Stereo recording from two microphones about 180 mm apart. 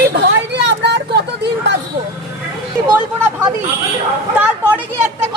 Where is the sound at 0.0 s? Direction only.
65° right (ahead or behind).